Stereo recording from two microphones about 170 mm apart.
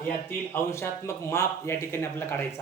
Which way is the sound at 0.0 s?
15° left (ahead or behind).